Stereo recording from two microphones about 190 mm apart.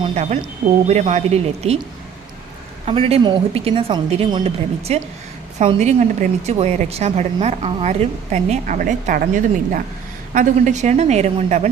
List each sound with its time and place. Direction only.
0.1 s a woman's voice: 35° right (ahead or behind)
2.8 s a woman's voice: 30° right (ahead or behind)